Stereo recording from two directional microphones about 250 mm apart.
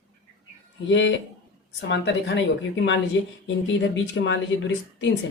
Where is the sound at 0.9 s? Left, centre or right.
Left.